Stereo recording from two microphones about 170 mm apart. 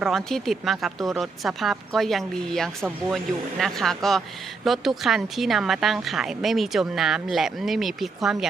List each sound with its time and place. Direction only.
0.0 s speech: centre (ahead or behind)